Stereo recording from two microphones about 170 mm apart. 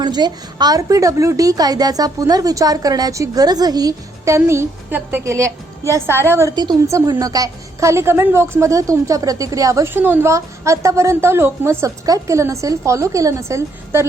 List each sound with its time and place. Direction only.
0.0 s a woman's voice: 25° right (ahead or behind)